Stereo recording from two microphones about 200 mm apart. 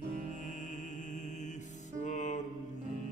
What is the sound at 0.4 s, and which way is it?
Music, 35° left (ahead or behind).